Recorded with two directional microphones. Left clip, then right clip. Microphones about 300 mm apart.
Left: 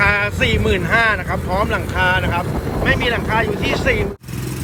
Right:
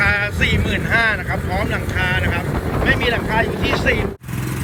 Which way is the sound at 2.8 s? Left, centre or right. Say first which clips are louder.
Even; left.